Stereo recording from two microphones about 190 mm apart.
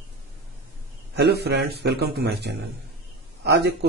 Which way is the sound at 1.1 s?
60° right (ahead or behind).